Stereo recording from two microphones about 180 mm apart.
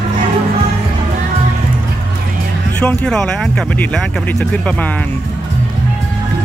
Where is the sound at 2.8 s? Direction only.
5° left (ahead or behind).